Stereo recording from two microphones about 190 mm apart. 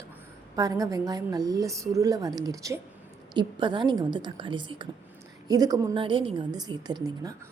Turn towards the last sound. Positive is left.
turn(degrees=-20)  # may be behind; listen again after turning